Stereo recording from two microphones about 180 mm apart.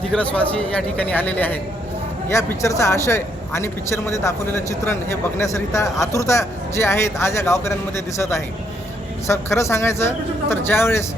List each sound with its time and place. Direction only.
0.1 s speech: 5° left (ahead or behind)